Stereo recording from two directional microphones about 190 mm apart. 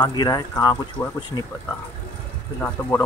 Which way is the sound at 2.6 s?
10° left (ahead or behind).